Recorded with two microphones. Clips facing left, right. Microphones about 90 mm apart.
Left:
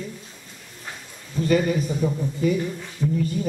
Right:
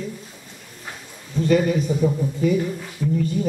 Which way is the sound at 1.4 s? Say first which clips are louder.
Right 2 dB; centre (ahead or behind).